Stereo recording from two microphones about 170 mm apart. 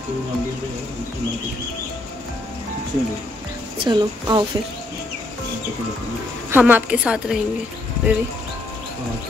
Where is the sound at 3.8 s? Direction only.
25° right (ahead or behind).